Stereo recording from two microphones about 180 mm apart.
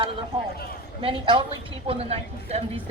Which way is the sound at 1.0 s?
30° right (ahead or behind).